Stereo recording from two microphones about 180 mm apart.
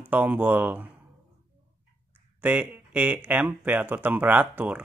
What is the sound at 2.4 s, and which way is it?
Speech, 5° right (ahead or behind).